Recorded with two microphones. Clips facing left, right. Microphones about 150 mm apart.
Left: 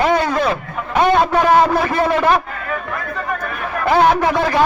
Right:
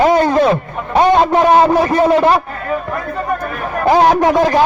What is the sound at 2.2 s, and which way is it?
A man's voice, 35° right (ahead or behind).